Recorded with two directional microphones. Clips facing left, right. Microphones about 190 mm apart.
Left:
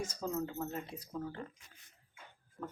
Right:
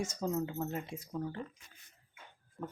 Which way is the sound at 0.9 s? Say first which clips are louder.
Right 3 dB; 85° right.